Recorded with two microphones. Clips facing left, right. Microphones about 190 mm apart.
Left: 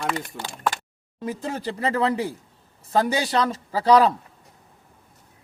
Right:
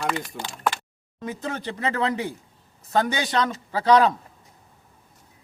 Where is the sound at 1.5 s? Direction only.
35° left (ahead or behind).